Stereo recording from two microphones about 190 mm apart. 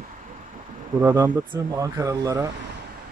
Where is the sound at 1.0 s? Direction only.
15° right (ahead or behind).